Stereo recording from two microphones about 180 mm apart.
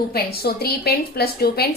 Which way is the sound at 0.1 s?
60° left (ahead or behind).